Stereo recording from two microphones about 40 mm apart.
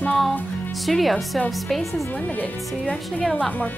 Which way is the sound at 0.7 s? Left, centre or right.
Centre.